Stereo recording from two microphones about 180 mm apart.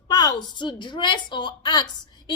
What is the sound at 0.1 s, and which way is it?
A woman's voice, 25° left (ahead or behind).